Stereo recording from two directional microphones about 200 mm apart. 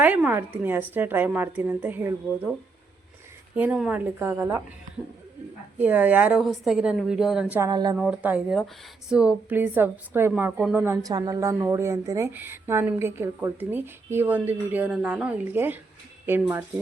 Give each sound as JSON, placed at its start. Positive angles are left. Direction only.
{"t": 0.0, "sound": "speech", "side_deg": -10}
{"t": 3.5, "sound": "speech", "side_deg": -5}
{"t": 5.8, "sound": "a woman's voice", "side_deg": -10}
{"t": 7.7, "sound": "speech", "side_deg": -20}
{"t": 7.9, "sound": "speech", "side_deg": -5}